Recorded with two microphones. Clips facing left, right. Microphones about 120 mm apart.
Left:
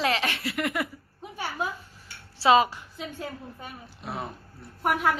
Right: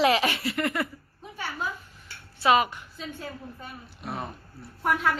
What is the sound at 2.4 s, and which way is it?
Speech, 30° left (ahead or behind).